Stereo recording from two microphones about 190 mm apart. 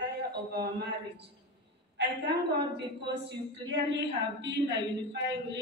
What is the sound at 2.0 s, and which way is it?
A woman's voice, 65° right (ahead or behind).